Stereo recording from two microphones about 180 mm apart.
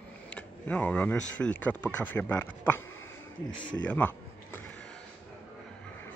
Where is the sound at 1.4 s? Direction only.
10° left (ahead or behind).